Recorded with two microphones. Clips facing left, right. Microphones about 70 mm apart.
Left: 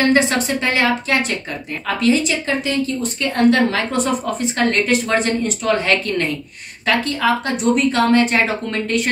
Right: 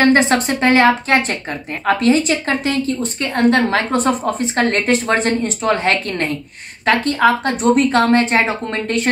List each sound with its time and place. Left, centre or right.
0.0 s speech: right